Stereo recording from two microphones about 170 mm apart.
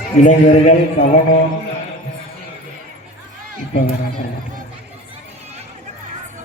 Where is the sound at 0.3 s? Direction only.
50° left (ahead or behind).